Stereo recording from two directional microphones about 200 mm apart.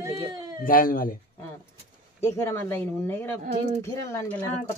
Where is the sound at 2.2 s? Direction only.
15° left (ahead or behind).